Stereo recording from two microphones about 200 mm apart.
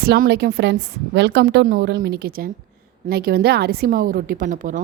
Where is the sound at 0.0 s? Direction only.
50° right (ahead or behind).